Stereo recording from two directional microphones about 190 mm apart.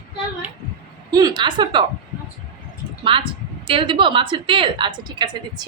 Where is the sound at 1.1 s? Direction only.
20° right (ahead or behind).